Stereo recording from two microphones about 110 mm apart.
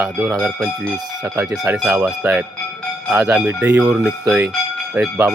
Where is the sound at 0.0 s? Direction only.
10° right (ahead or behind).